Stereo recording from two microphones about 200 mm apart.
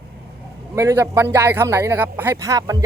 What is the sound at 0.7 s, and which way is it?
A man's voice, 15° right (ahead or behind).